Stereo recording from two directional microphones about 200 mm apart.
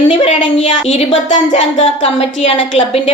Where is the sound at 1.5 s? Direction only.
30° left (ahead or behind).